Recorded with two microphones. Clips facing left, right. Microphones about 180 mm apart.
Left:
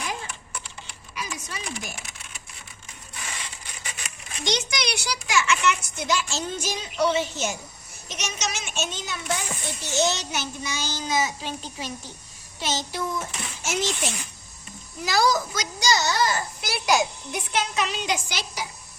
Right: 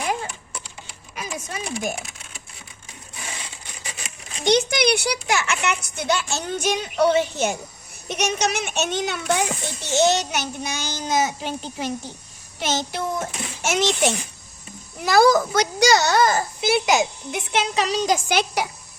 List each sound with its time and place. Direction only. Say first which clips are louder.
1.1 s a sound: right 4 dB; 50° right (ahead or behind)
4.4 s a child's voice: right 9 dB; 60° right (ahead or behind)
12.5 s a child's voice: right 4 dB; 60° right (ahead or behind); by 14.2 s 75° right (ahead or behind)
15.0 s a child's voice: right 7 dB; 55° right (ahead or behind)
16.6 s a woman's voice: right 4 dB; 20° right (ahead or behind)
17.8 s speech: right 7 dB; 40° right (ahead or behind)
18.3 s a child's voice: right 11 dB; 65° right (ahead or behind)